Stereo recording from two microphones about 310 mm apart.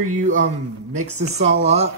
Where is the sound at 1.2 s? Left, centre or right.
Right.